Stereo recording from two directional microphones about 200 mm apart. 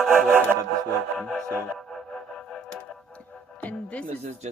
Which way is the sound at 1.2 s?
5° left (ahead or behind).